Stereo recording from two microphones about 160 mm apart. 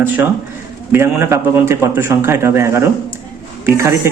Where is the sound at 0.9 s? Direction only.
15° right (ahead or behind).